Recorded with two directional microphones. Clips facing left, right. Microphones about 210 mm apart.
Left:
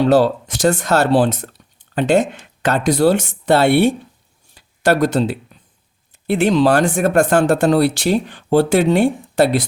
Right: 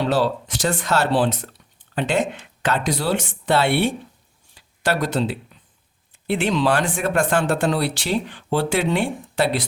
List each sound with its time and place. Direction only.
0.1 s speech: 45° left (ahead or behind)
4.5 s a sound: 45° left (ahead or behind)
6.2 s speech: 40° left (ahead or behind)